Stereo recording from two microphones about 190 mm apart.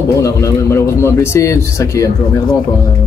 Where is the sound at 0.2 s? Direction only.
15° left (ahead or behind).